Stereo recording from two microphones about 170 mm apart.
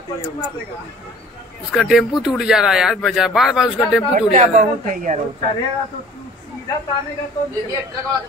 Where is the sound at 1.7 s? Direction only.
Centre (ahead or behind).